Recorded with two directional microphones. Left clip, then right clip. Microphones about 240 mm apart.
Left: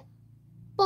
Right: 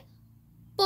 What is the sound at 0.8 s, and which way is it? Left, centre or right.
Music, centre.